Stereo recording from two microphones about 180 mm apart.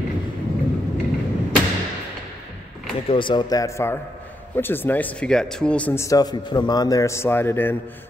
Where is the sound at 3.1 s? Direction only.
25° left (ahead or behind).